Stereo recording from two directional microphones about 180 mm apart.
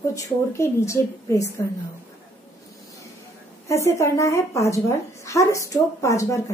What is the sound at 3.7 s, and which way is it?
A woman's voice, 15° left (ahead or behind).